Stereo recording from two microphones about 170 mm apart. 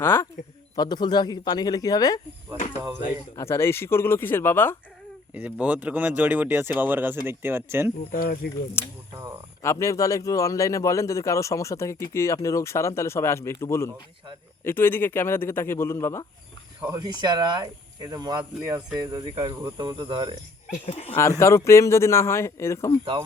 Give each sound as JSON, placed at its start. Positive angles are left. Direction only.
{"t": 0.0, "sound": "a man's voice", "side_deg": 15}
{"t": 0.8, "sound": "speech", "side_deg": 25}
{"t": 3.3, "sound": "a man's voice", "side_deg": 15}
{"t": 5.3, "sound": "speech", "side_deg": -10}
{"t": 8.1, "sound": "speech", "side_deg": 60}
{"t": 9.6, "sound": "a man's voice", "side_deg": 15}
{"t": 16.8, "sound": "speech", "side_deg": -20}
{"t": 20.8, "sound": "speech", "side_deg": 35}
{"t": 21.2, "sound": "a man's voice", "side_deg": 15}